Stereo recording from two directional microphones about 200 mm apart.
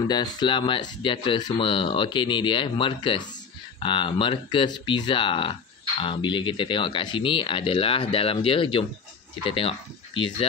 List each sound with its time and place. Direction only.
0.1 s speech: 20° left (ahead or behind)